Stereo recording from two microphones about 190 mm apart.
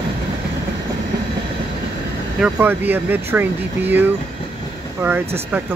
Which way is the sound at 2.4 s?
10° right (ahead or behind).